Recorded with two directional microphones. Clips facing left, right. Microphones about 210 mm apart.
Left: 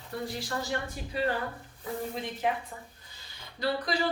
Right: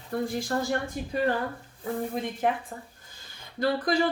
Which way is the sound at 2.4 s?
50° right (ahead or behind).